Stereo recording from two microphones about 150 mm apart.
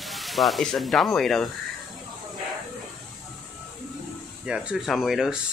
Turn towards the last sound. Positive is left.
turn(degrees=0)  # may be behind; listen again after turning